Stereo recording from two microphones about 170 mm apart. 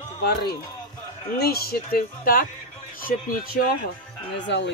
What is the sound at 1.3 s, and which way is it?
Speech, 65° left (ahead or behind).